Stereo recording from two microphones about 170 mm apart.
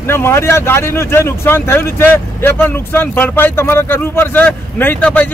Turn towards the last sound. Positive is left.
turn(degrees=10)  # may be behind; listen again after turning